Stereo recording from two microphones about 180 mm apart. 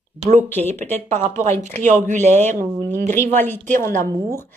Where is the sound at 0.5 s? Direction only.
10° left (ahead or behind).